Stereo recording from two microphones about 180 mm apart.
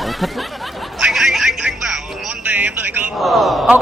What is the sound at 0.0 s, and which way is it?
Snicker, centre (ahead or behind).